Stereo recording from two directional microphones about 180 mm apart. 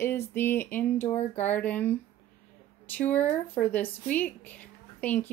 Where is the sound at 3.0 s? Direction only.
10° left (ahead or behind).